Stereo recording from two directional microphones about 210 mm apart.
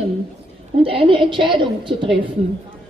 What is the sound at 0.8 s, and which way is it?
A woman's voice, 25° right (ahead or behind).